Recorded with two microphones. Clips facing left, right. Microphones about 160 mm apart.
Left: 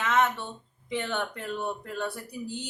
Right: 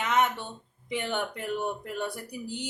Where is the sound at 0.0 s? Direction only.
15° right (ahead or behind).